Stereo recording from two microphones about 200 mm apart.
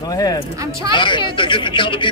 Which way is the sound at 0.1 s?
20° left (ahead or behind).